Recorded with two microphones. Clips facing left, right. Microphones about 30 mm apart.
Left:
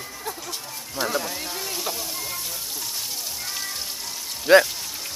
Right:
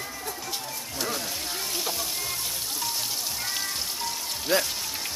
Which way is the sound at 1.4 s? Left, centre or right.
Centre.